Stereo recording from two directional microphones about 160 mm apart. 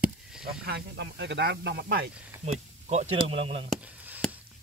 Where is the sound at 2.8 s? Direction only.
45° right (ahead or behind).